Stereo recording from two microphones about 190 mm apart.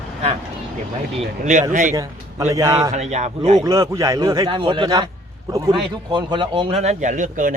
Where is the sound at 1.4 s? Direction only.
40° right (ahead or behind).